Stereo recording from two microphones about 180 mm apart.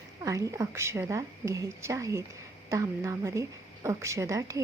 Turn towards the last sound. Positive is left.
turn(degrees=-20)  # may be behind; listen again after turning